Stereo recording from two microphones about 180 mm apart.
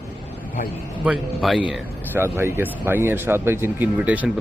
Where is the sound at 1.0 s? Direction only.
Centre (ahead or behind).